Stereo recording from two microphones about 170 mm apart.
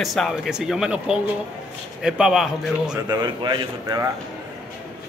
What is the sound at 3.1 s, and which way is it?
Speech, 25° right (ahead or behind).